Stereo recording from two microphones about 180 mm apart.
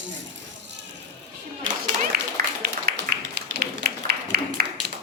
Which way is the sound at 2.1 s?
60° right (ahead or behind).